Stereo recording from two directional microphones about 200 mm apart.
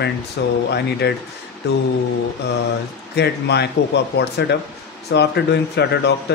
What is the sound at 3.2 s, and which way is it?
Speech, 55° left (ahead or behind).